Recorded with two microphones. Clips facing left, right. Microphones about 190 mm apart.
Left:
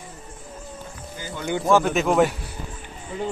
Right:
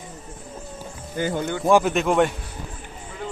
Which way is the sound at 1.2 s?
60° right (ahead or behind).